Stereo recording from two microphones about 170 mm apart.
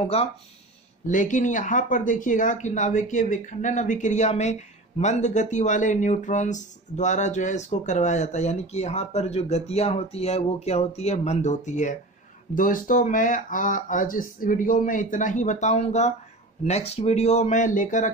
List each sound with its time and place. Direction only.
0.1 s speech: 35° left (ahead or behind)
1.0 s speech: 50° left (ahead or behind)